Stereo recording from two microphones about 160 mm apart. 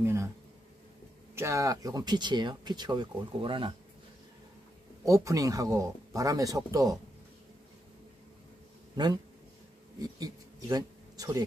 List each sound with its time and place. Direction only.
0.0 s a sound: 15° right (ahead or behind)
1.3 s speech: 20° right (ahead or behind)
5.0 s speech: 20° right (ahead or behind)
8.9 s speech: 25° right (ahead or behind)